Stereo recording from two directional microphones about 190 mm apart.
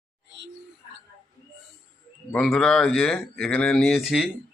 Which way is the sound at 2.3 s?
5° left (ahead or behind).